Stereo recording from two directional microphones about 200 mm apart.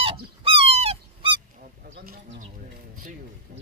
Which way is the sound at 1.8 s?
50° right (ahead or behind).